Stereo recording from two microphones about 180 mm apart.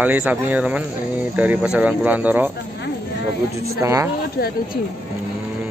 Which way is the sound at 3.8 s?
15° right (ahead or behind).